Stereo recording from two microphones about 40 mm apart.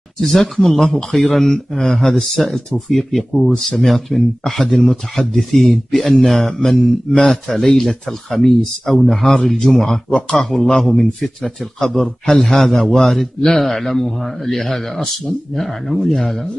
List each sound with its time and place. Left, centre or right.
0.2 s speech: centre
10.0 s speech: left
10.8 s speech: centre